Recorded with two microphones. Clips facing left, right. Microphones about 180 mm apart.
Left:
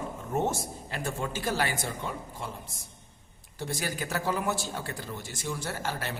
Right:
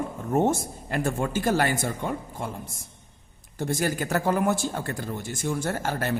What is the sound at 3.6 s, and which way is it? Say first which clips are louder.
A man's voice: right 7 dB; 50° right (ahead or behind).